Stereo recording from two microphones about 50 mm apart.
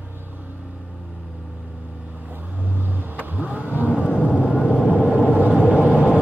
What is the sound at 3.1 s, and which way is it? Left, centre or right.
Vehicle, right.